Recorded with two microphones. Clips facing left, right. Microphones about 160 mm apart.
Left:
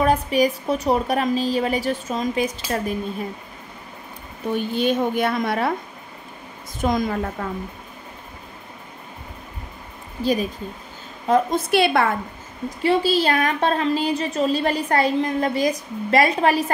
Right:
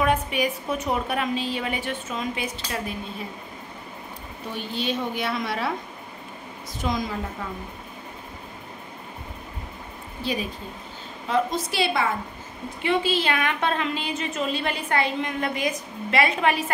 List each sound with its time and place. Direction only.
0.0 s a woman's voice: 35° left (ahead or behind)
4.6 s a woman's voice: 50° left (ahead or behind)
6.8 s a woman's voice: 50° left (ahead or behind)
11.2 s a woman's voice: 50° left (ahead or behind)
12.6 s a woman's voice: 35° left (ahead or behind)